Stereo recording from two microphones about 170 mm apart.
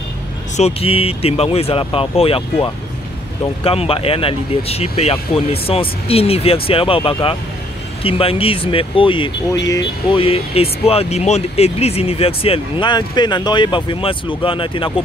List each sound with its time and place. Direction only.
0.6 s speech: 35° left (ahead or behind)